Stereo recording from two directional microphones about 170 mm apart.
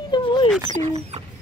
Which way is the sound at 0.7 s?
40° right (ahead or behind).